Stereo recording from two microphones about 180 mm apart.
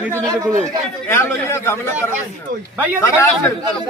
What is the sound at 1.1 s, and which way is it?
Speech, 15° left (ahead or behind).